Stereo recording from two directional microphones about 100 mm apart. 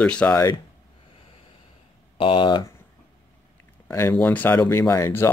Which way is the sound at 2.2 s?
60° left (ahead or behind).